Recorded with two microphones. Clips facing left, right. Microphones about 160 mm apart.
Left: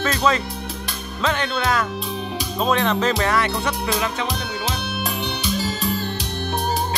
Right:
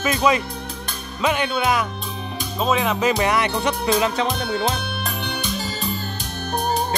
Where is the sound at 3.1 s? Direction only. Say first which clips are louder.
Right 1 dB; 15° right (ahead or behind).